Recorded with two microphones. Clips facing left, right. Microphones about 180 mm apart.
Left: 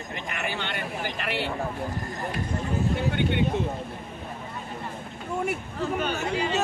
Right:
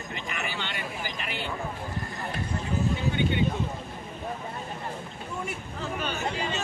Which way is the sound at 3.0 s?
60° left (ahead or behind).